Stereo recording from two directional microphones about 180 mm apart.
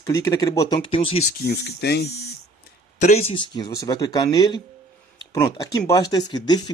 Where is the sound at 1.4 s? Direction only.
65° left (ahead or behind).